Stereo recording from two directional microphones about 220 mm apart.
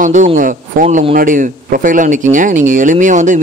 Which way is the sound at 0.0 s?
35° right (ahead or behind).